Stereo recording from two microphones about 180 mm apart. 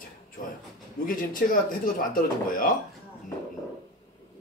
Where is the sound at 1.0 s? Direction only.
50° left (ahead or behind).